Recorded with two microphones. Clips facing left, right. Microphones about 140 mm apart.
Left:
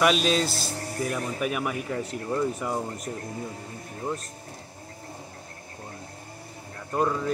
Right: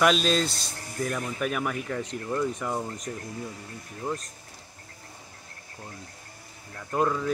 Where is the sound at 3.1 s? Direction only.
25° left (ahead or behind).